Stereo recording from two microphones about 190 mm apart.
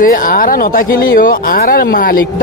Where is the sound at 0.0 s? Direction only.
50° left (ahead or behind).